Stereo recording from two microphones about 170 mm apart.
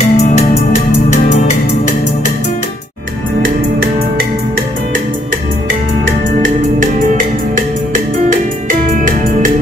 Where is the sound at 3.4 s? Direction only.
65° right (ahead or behind).